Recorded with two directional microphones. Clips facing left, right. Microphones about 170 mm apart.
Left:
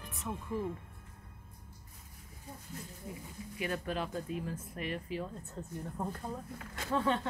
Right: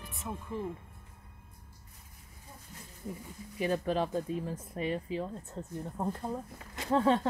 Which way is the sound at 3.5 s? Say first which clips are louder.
Right 6 dB; 35° right (ahead or behind).